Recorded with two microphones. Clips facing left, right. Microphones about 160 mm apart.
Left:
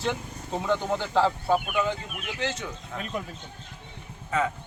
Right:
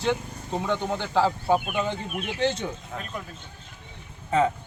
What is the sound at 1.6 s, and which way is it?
Speech, 30° right (ahead or behind).